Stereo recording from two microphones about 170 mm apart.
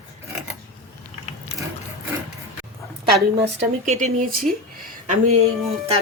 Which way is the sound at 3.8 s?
45° right (ahead or behind).